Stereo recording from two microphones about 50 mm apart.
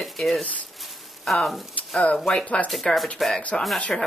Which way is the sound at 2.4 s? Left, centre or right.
Left.